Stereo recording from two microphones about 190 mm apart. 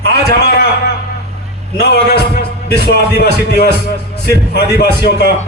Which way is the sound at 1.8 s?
55° left (ahead or behind).